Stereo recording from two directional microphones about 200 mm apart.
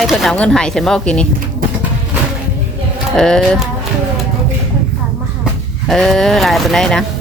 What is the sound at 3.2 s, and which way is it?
Speech, 5° left (ahead or behind).